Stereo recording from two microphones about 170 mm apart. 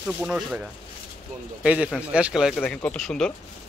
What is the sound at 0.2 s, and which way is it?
Speech, 5° right (ahead or behind).